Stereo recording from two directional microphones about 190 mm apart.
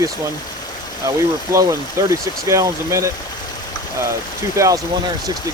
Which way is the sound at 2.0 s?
15° right (ahead or behind).